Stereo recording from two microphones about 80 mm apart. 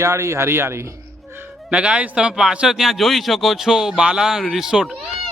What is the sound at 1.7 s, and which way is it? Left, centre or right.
A man's voice, centre.